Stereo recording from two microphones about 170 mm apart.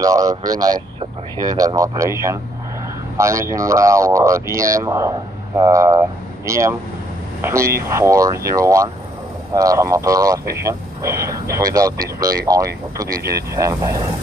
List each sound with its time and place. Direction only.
0.0 s speech: 20° right (ahead or behind)